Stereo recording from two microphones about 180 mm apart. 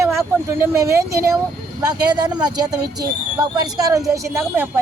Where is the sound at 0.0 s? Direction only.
15° right (ahead or behind).